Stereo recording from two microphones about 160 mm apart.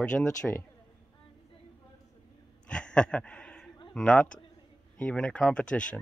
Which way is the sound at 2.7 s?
5° left (ahead or behind).